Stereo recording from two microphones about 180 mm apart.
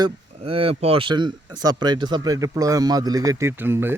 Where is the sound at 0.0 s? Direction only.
30° right (ahead or behind).